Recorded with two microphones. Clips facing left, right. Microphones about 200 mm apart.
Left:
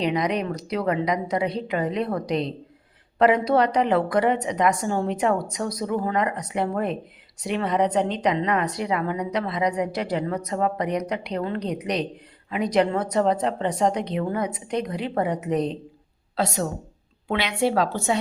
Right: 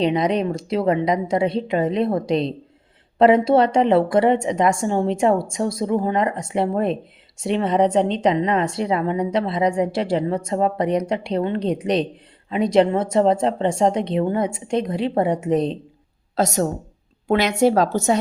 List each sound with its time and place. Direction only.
0.0 s a woman's voice: 25° right (ahead or behind)
16.3 s a woman's voice: 45° right (ahead or behind)